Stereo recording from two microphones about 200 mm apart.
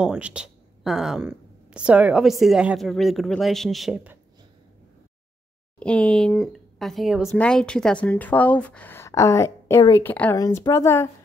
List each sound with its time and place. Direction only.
0.0 s a woman's voice: 5° right (ahead or behind)
5.8 s speech: 5° left (ahead or behind)